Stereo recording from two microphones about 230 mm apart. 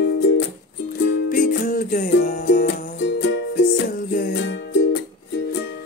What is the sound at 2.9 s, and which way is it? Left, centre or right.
Music, left.